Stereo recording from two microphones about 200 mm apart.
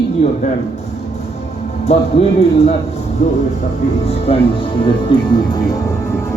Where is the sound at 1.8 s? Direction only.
30° left (ahead or behind).